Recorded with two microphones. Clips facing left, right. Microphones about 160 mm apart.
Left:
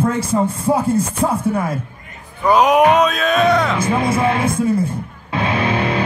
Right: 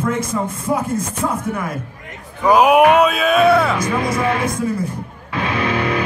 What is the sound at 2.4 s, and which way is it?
Speech, 10° right (ahead or behind).